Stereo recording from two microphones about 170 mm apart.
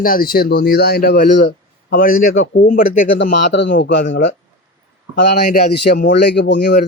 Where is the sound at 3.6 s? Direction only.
90° left.